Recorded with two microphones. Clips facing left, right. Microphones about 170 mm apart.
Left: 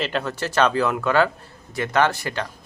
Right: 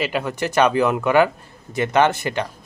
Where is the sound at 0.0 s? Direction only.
10° right (ahead or behind).